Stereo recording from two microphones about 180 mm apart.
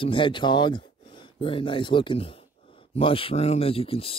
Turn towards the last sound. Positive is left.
turn(degrees=30)  # may be behind; listen again after turning